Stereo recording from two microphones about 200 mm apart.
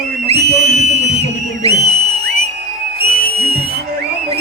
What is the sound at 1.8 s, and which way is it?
Music, 30° right (ahead or behind).